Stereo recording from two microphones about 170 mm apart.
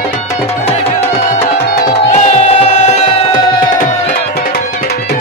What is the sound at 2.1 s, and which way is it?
Music, 45° left (ahead or behind).